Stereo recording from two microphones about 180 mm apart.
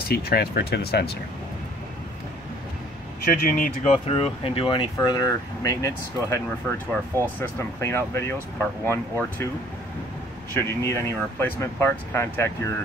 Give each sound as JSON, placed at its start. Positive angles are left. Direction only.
{"t": 0.1, "sound": "speech", "side_deg": 60}
{"t": 3.4, "sound": "speech", "side_deg": 50}
{"t": 10.5, "sound": "speech", "side_deg": 15}